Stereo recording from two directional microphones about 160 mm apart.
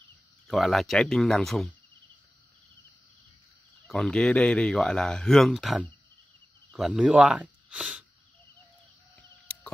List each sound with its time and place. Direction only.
0.5 s speech: centre (ahead or behind)
3.8 s speech: centre (ahead or behind)
9.1 s a sound: 5° left (ahead or behind)